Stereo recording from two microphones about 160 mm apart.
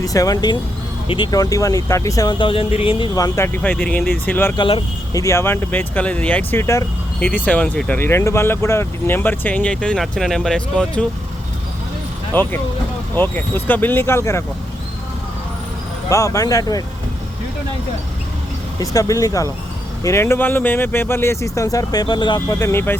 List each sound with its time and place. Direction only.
0.0 s speech: 20° left (ahead or behind)
3.2 s speech: 20° left (ahead or behind)
4.5 s speech: 30° left (ahead or behind)
5.2 s speech: 15° left (ahead or behind)
12.3 s speech: 10° left (ahead or behind)
16.0 s speech: 20° left (ahead or behind)
18.8 s speech: 20° left (ahead or behind)
22.5 s speech: 15° left (ahead or behind)